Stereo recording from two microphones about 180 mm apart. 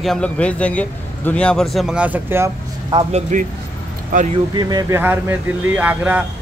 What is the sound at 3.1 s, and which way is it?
Speech, 45° right (ahead or behind).